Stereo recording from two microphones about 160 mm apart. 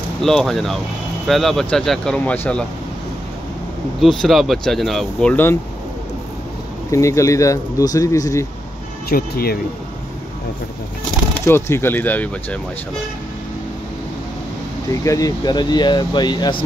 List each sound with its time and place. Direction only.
0.2 s speech: centre (ahead or behind)
4.0 s speech: centre (ahead or behind)
6.9 s speech: 20° left (ahead or behind)
9.1 s speech: 75° left (ahead or behind)
11.4 s speech: 15° left (ahead or behind)
15.0 s speech: 20° left (ahead or behind)